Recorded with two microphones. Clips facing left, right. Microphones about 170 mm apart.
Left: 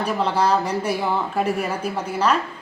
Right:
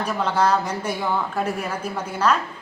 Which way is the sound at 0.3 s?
10° left (ahead or behind).